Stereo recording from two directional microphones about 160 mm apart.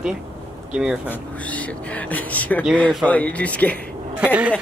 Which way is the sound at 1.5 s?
10° left (ahead or behind).